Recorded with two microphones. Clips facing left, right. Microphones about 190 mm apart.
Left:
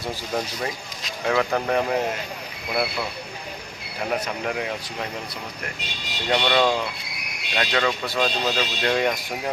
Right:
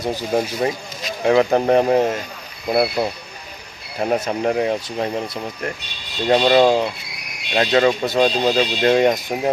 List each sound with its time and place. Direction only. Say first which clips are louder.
0.3 s speech: right 8 dB; 30° right (ahead or behind)